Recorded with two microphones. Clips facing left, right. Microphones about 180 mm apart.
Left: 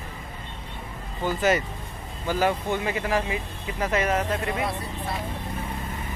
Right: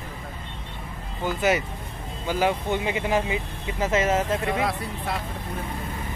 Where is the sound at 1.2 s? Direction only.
10° right (ahead or behind).